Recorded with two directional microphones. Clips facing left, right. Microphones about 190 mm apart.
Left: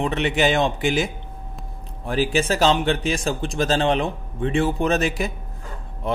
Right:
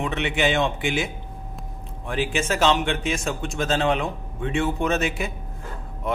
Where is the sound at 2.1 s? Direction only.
35° left (ahead or behind).